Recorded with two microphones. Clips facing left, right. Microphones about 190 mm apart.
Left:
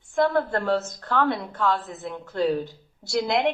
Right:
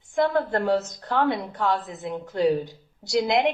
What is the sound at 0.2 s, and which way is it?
A woman's voice, 15° right (ahead or behind).